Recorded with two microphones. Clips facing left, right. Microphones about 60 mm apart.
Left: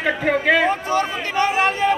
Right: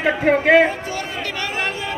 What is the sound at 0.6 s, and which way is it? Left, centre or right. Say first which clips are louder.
Speech: left 5 dB; left.